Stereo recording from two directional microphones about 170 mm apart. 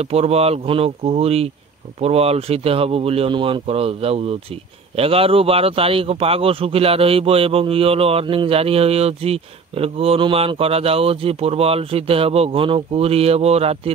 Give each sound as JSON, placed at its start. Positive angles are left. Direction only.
{"t": 0.0, "sound": "speech", "side_deg": -35}